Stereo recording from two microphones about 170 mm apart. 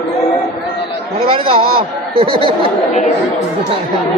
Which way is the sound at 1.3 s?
30° right (ahead or behind).